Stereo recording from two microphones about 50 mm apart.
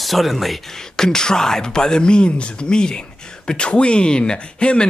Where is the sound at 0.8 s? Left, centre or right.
Centre.